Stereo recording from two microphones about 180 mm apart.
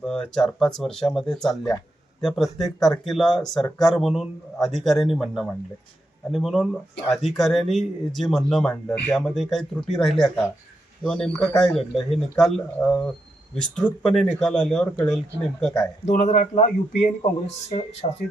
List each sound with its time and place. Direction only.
0.0 s speech: 5° left (ahead or behind)
14.0 s speech: centre (ahead or behind)
16.0 s speech: 40° left (ahead or behind)